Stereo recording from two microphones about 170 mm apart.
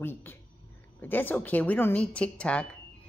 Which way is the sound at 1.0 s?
10° left (ahead or behind).